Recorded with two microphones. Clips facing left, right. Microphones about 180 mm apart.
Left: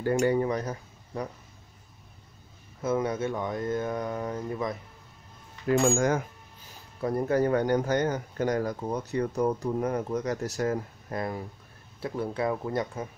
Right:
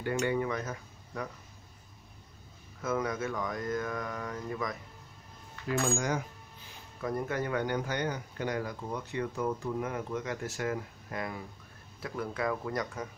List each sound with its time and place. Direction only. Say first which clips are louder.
0.0 s cutlery: left 6 dB; 40° left (ahead or behind)
2.8 s speech: left 5 dB; 25° left (ahead or behind)
5.9 s coin: left 7 dB; 50° left (ahead or behind)
7.0 s speech: left 7 dB; 30° left (ahead or behind)